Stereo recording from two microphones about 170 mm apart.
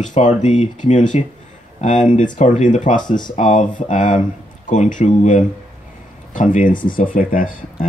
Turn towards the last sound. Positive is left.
turn(degrees=55)  # may be behind; listen again after turning